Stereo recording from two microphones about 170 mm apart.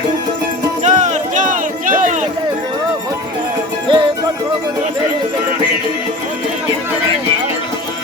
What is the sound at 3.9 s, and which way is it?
Music, 30° right (ahead or behind).